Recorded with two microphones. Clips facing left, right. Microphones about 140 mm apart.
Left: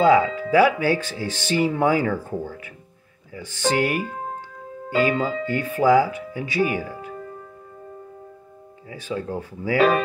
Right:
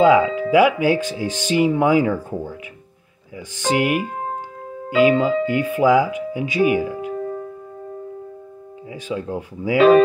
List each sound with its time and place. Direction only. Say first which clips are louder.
0.0 s speech: right 3 dB; 15° right (ahead or behind)
5.2 s speech: right 6 dB; 15° right (ahead or behind)
8.9 s speech: right 2 dB; 15° right (ahead or behind)